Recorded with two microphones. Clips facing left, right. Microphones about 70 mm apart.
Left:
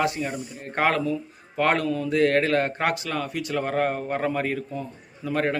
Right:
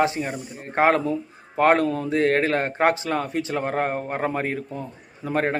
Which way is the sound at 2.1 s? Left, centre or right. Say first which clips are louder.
Left 1 dB; right.